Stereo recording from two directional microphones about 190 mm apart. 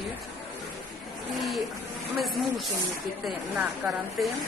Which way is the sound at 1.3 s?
Centre (ahead or behind).